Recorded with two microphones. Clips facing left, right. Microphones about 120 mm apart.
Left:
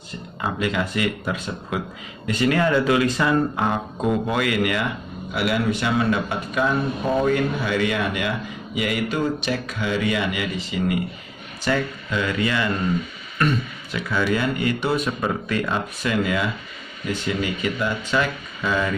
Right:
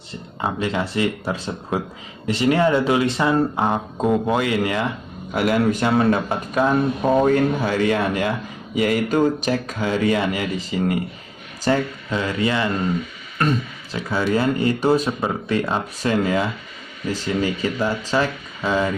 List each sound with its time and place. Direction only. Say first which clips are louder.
0.4 s speech: right 1 dB; 30° right (ahead or behind)
5.3 s speech: right 4 dB; 40° right (ahead or behind)